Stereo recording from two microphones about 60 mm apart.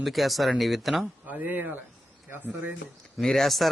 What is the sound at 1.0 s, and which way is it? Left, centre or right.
Speech, right.